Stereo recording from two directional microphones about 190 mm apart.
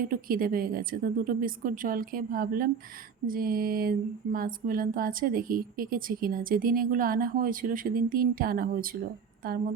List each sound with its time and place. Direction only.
0.0 s speech: 50° right (ahead or behind)